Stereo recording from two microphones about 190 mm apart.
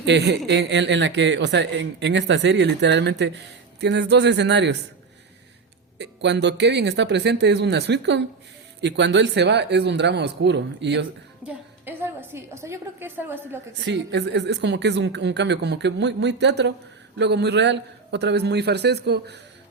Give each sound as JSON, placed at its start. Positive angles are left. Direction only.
{"t": 0.0, "sound": "a man's voice", "side_deg": -65}
{"t": 6.0, "sound": "a man's voice", "side_deg": -65}
{"t": 11.4, "sound": "a woman's voice", "side_deg": -10}
{"t": 13.8, "sound": "a man's voice", "side_deg": -65}